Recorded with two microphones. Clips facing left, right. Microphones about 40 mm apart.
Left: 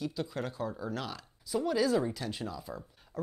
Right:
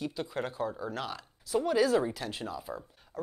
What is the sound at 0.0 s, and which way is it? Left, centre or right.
Speech, centre.